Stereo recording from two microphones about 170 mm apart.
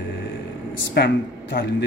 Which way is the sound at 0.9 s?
65° left (ahead or behind).